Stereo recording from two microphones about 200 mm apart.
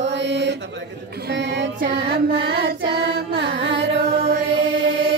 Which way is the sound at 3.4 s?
65° right (ahead or behind).